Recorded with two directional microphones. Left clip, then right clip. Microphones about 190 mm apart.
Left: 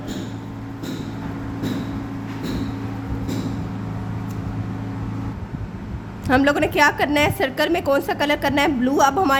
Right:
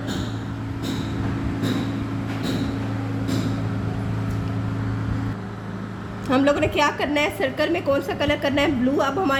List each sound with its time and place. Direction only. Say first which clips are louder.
6.2 s a woman's voice: left 2 dB; 40° left (ahead or behind)